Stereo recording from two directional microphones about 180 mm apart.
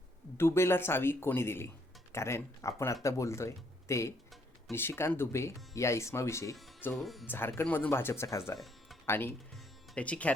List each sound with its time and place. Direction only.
0.3 s speech: 15° left (ahead or behind)
6.9 s speech: centre (ahead or behind)
7.3 s speech: 10° left (ahead or behind)
8.5 s music: centre (ahead or behind)
9.0 s speech: 10° left (ahead or behind)